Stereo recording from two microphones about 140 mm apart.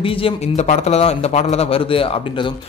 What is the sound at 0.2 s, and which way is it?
A man's voice, 50° left (ahead or behind).